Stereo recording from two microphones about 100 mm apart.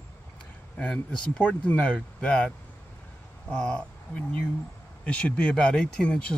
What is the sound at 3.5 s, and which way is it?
Speech, 10° left (ahead or behind).